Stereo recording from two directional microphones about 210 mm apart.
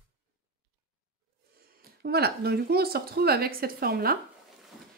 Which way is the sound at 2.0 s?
50° right (ahead or behind).